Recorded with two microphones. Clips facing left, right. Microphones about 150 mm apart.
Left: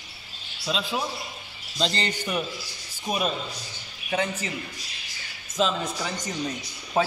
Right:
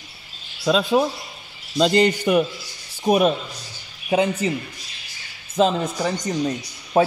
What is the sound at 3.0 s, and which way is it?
Speech, 45° right (ahead or behind).